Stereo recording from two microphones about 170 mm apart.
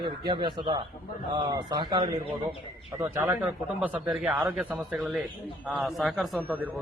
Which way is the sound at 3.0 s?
15° right (ahead or behind).